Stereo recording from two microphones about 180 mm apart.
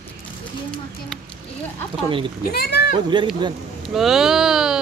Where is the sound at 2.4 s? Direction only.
60° left (ahead or behind).